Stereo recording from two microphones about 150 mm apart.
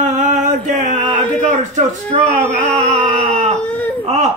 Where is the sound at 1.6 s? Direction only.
55° right (ahead or behind).